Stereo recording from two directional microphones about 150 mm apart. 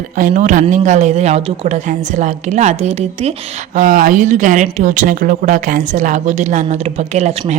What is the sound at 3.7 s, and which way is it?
Speech, 60° right (ahead or behind).